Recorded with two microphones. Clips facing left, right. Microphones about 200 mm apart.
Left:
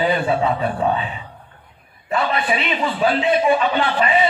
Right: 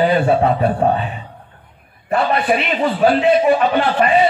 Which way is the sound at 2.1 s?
60° right (ahead or behind).